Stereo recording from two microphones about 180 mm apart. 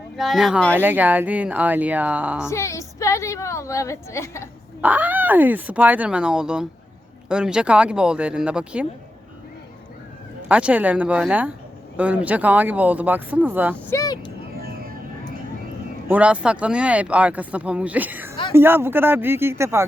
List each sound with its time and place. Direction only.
0.2 s speech: centre (ahead or behind)
2.5 s a woman's voice: 15° left (ahead or behind)
4.8 s speech: 10° right (ahead or behind)
10.5 s speech: 5° right (ahead or behind)
13.9 s speech: 20° left (ahead or behind)
14.6 s vehicle: 55° right (ahead or behind)
16.0 s speech: 10° right (ahead or behind)